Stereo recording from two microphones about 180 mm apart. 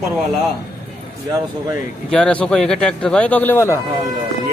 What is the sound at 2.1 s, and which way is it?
Speech, 5° left (ahead or behind).